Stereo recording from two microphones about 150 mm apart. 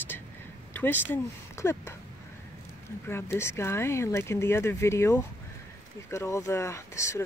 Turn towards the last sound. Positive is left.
turn(degrees=20)  # may be behind; listen again after turning